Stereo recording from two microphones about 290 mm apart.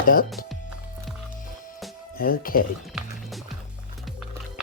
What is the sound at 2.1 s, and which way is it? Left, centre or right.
Speech, left.